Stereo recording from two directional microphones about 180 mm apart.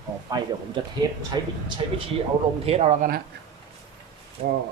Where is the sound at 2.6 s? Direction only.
35° right (ahead or behind).